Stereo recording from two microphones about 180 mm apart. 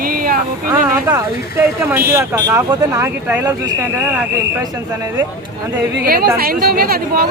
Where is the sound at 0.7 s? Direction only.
15° right (ahead or behind).